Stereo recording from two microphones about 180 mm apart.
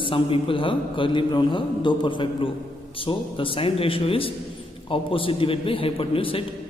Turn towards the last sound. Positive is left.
turn(degrees=30)  # may be behind; listen again after turning